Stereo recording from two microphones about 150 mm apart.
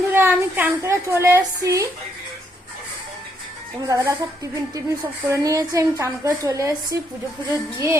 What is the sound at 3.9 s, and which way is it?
A woman's voice, 20° right (ahead or behind).